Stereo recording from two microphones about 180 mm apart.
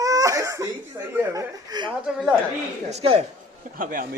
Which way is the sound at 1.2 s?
20° right (ahead or behind).